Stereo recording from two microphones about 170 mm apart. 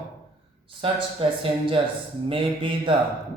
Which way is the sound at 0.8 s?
30° right (ahead or behind).